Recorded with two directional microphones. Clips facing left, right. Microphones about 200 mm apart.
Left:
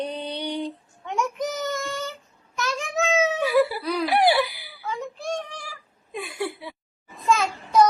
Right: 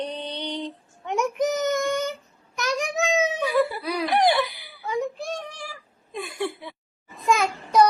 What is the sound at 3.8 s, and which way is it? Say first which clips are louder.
Speech: left 1 dB; 10° right (ahead or behind).